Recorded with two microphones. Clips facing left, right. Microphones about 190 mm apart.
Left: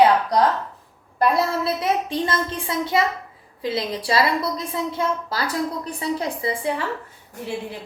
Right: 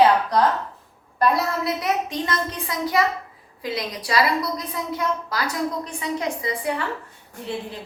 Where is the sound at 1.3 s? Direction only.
30° left (ahead or behind).